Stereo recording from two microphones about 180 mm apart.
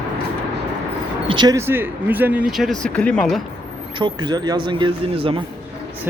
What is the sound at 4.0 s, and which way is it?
Speech, 25° right (ahead or behind).